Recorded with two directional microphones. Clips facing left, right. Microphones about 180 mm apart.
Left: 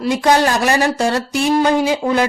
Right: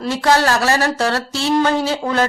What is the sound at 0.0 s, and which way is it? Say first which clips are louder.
Speech: left 2 dB; 15° left (ahead or behind).